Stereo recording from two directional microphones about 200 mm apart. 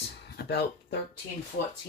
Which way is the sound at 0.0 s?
55° left (ahead or behind).